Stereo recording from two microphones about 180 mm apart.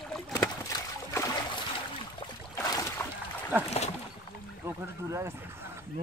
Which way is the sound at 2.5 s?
20° left (ahead or behind).